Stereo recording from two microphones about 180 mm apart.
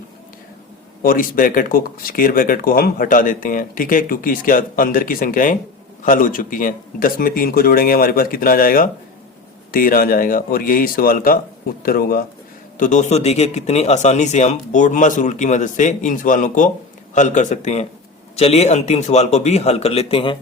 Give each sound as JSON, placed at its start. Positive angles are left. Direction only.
{"t": 1.0, "sound": "speech", "side_deg": 50}